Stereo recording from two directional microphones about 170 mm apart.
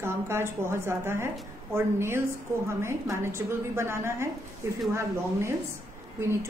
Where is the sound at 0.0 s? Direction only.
15° right (ahead or behind).